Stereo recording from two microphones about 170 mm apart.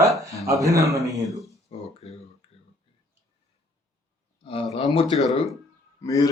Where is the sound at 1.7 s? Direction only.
35° left (ahead or behind).